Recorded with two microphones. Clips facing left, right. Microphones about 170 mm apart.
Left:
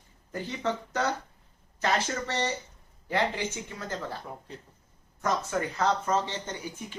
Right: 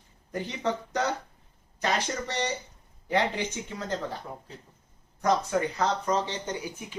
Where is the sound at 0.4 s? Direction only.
15° right (ahead or behind).